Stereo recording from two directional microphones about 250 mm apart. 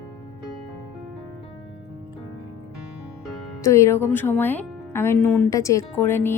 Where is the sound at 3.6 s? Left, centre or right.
Centre.